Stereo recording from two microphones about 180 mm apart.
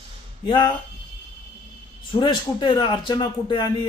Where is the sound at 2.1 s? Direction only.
25° left (ahead or behind).